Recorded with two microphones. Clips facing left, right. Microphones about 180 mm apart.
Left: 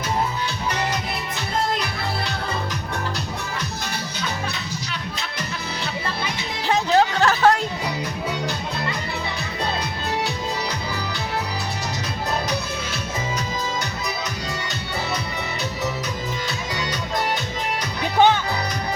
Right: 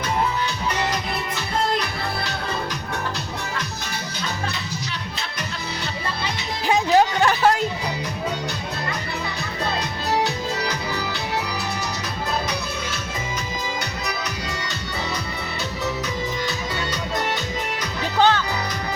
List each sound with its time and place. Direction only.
6.7 s music: 15° right (ahead or behind)
18.0 s music: 15° left (ahead or behind)